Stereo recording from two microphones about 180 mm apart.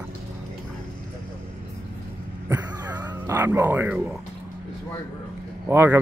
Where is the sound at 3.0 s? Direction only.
15° right (ahead or behind).